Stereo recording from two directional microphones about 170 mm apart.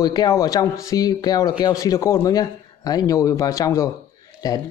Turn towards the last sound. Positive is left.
turn(degrees=20)  # may be behind; listen again after turning